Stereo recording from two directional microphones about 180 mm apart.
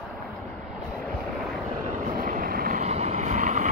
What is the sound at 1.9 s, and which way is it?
Vehicle, 45° right (ahead or behind).